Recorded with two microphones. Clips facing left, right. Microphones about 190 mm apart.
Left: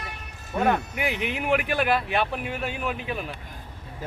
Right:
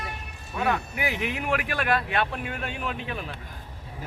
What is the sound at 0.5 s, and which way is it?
Speech, 30° left (ahead or behind).